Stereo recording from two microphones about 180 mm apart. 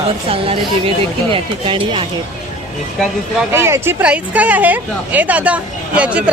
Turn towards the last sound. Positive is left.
turn(degrees=-5)  # may be behind; listen again after turning